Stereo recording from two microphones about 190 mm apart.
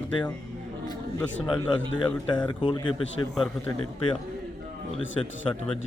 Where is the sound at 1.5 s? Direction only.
25° left (ahead or behind).